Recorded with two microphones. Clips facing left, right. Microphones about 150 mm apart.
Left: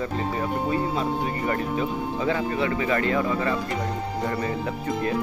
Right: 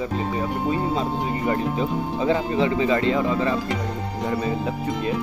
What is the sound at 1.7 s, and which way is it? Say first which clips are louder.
Speech: right 2 dB; 25° right (ahead or behind).